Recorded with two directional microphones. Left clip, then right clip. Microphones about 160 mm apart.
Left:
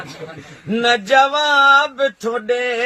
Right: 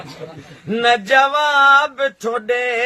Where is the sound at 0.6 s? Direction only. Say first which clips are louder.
Right 1 dB; 20° right (ahead or behind).